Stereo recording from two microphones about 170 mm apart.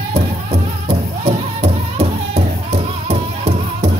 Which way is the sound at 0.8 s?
40° right (ahead or behind).